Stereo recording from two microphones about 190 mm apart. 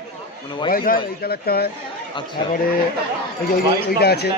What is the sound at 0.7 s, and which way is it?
A man's voice, 50° left (ahead or behind).